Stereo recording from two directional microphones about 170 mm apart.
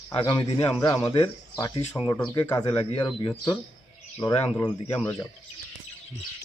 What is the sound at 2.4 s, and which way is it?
Speech, 15° left (ahead or behind).